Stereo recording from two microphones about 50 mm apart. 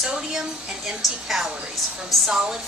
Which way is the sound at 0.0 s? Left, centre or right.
Centre.